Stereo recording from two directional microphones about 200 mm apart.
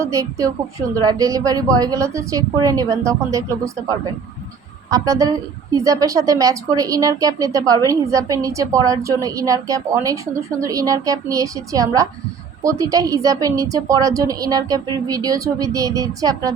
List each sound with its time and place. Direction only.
0.1 s a woman's voice: 15° right (ahead or behind)